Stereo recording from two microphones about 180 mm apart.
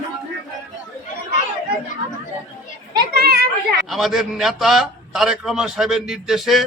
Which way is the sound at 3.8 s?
Centre (ahead or behind).